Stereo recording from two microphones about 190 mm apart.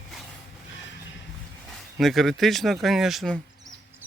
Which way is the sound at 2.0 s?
Centre (ahead or behind).